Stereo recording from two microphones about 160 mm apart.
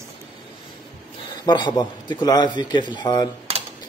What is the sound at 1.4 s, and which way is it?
Speech, 25° left (ahead or behind).